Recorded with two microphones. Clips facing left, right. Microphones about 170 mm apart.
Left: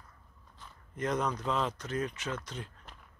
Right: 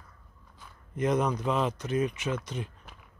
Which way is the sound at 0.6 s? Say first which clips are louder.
Right 6 dB; 15° right (ahead or behind).